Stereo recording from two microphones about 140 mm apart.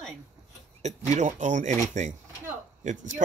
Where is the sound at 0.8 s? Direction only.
55° right (ahead or behind).